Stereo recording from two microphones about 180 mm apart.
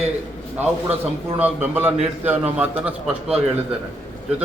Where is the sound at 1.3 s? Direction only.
10° right (ahead or behind).